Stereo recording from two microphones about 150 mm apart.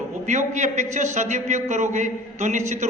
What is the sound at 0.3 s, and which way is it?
A man's voice, 50° right (ahead or behind).